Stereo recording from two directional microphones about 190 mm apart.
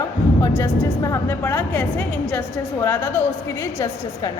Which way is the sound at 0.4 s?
15° left (ahead or behind).